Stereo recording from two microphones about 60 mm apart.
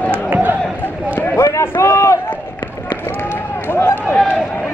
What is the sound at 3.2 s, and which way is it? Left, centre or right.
Run, left.